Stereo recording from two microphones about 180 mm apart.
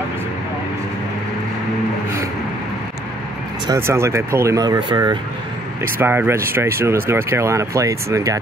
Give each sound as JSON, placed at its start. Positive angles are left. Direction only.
{"t": 3.6, "sound": "speech", "side_deg": -15}
{"t": 5.9, "sound": "speech", "side_deg": -10}